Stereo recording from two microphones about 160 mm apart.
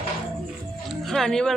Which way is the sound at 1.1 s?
5° left (ahead or behind).